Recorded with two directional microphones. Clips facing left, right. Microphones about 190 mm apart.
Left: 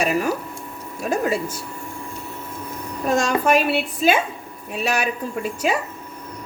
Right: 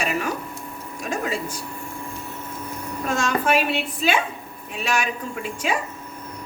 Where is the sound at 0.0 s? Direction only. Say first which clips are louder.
Left 4 dB; 40° left (ahead or behind).